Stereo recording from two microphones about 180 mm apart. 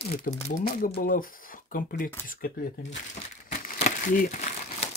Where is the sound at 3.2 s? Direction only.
40° left (ahead or behind).